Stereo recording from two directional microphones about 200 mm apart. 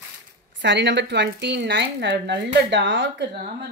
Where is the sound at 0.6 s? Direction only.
60° right (ahead or behind).